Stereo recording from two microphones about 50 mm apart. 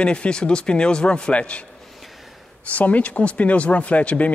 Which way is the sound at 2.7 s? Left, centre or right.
Left.